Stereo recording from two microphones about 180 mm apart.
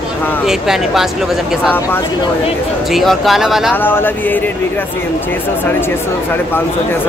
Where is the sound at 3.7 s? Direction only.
10° left (ahead or behind).